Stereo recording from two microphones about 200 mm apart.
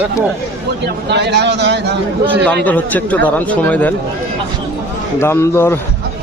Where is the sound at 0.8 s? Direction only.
60° right (ahead or behind).